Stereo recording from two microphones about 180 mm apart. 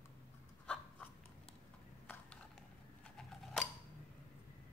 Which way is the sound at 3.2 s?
Centre (ahead or behind).